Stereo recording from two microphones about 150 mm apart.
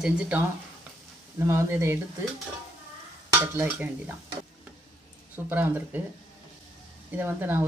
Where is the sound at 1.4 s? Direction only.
20° right (ahead or behind).